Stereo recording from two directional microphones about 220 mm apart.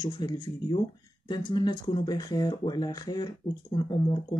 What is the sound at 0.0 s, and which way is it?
Speech, 20° left (ahead or behind).